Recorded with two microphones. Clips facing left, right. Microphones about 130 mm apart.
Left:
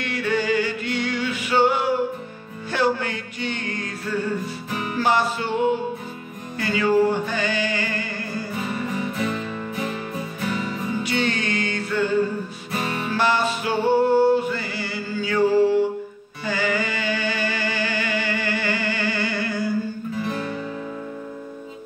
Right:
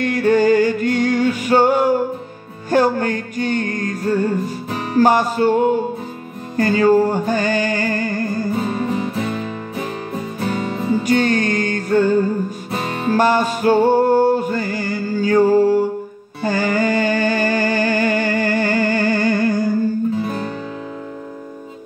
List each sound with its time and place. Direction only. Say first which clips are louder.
0.0 s music: right 9 dB; 45° right (ahead or behind)
10.9 s music: right 9 dB; 45° right (ahead or behind)